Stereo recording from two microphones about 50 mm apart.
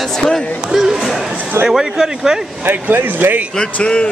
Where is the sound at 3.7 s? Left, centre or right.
Centre.